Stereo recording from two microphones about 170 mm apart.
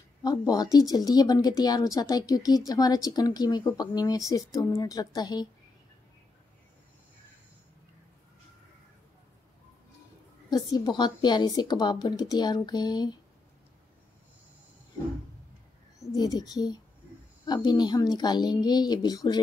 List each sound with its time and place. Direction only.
0.2 s speech: 25° left (ahead or behind)
10.5 s speech: 25° left (ahead or behind)
16.0 s speech: 20° left (ahead or behind)